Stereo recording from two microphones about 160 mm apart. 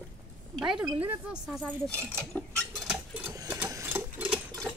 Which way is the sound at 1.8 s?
10° left (ahead or behind).